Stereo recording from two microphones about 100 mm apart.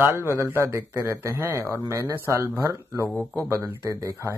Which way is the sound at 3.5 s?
25° right (ahead or behind).